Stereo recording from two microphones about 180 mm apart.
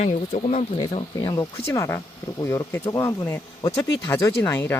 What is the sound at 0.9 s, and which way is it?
Speech, 30° left (ahead or behind).